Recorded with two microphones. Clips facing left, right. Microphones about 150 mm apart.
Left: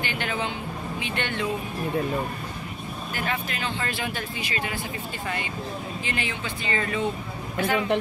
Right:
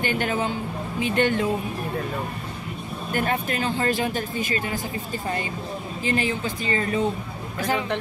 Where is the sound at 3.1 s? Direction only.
45° right (ahead or behind).